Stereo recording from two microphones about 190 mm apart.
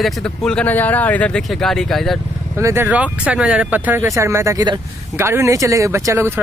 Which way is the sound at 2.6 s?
15° right (ahead or behind).